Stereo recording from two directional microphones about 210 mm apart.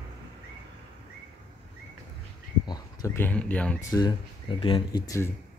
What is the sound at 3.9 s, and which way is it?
Speech, 20° left (ahead or behind).